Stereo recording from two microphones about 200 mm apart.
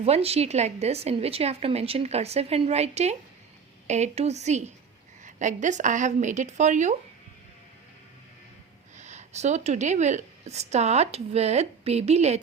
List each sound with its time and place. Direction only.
0.0 s a woman's voice: 30° right (ahead or behind)
9.0 s a woman's voice: 35° right (ahead or behind)